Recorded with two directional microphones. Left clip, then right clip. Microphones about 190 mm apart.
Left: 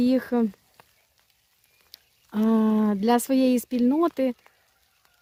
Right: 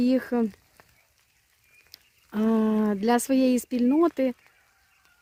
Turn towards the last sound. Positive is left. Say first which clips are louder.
# even
turn(degrees=5)  # may be behind; listen again after turning